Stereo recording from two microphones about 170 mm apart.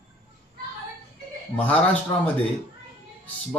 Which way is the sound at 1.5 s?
10° left (ahead or behind).